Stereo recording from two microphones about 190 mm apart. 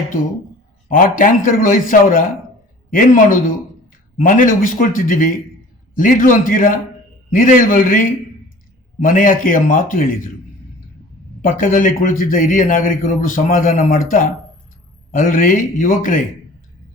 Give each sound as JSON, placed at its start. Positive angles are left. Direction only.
{"t": 0.9, "sound": "a man's voice", "side_deg": 45}
{"t": 11.4, "sound": "a man's voice", "side_deg": 45}